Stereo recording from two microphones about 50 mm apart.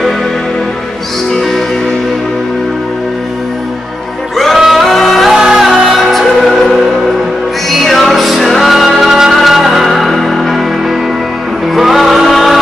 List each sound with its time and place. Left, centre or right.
4.6 s music: centre
4.8 s music: centre
5.3 s music: centre
7.7 s music: centre
11.7 s music: centre